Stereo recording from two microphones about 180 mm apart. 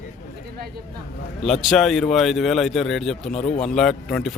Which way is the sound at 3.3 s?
40° left (ahead or behind).